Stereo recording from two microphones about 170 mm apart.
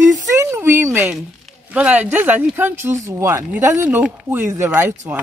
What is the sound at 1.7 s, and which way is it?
Speech, 10° right (ahead or behind).